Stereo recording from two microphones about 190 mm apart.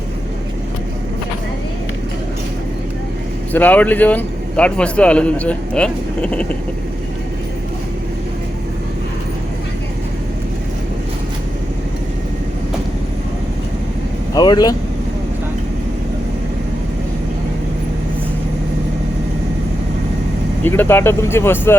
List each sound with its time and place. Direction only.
3.5 s a man's voice: 10° left (ahead or behind)
14.3 s speech: 20° left (ahead or behind)
20.7 s a man's voice: 10° left (ahead or behind)